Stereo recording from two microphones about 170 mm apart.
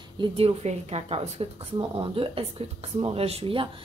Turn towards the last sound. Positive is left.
turn(degrees=-30)  # may be behind; listen again after turning